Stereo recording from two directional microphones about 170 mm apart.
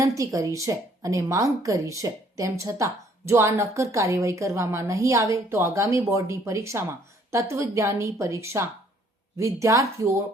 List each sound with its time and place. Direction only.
0.0 s a woman's voice: 20° right (ahead or behind)